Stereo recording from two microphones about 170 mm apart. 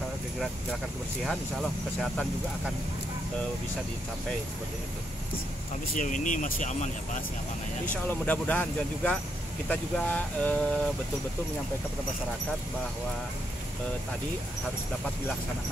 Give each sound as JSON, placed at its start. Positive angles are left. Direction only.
{"t": 1.2, "sound": "speech", "side_deg": 0}
{"t": 5.9, "sound": "speech", "side_deg": 50}
{"t": 7.8, "sound": "speech", "side_deg": 10}